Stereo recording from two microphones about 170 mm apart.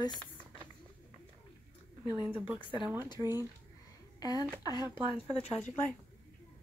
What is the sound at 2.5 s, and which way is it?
Speech, 30° left (ahead or behind).